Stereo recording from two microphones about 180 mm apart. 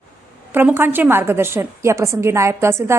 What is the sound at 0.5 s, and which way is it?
A woman's voice, 10° right (ahead or behind).